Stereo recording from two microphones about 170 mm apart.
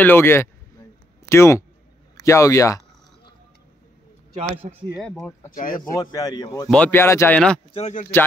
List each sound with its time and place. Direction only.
0.0 s a man's voice: 15° left (ahead or behind)
4.6 s speech: 45° right (ahead or behind)
5.5 s speech: 55° left (ahead or behind)
5.9 s a man's voice: 20° left (ahead or behind)
6.7 s speech: 10° left (ahead or behind)
7.3 s speech: 5° left (ahead or behind)
7.7 s speech: 45° left (ahead or behind)